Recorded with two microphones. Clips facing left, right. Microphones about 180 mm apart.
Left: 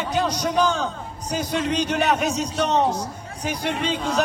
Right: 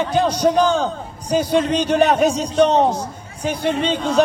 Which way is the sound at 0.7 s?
30° right (ahead or behind).